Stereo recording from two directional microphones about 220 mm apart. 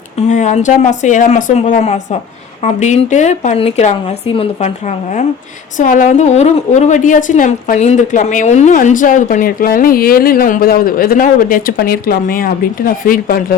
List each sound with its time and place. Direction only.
0.2 s a woman's voice: 35° left (ahead or behind)